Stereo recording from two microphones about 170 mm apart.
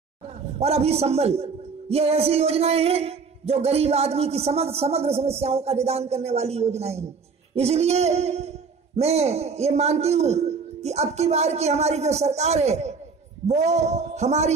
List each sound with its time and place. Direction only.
0.6 s a man's voice: 35° right (ahead or behind)